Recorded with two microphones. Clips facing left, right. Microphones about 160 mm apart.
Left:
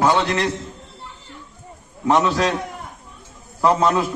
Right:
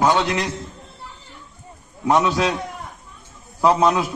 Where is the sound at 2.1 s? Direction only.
5° right (ahead or behind).